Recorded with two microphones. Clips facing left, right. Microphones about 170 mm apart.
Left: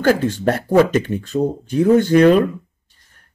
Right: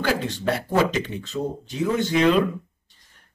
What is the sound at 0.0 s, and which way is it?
Speech, 45° left (ahead or behind).